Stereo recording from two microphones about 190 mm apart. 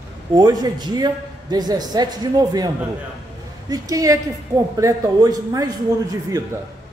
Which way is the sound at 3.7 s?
20° right (ahead or behind).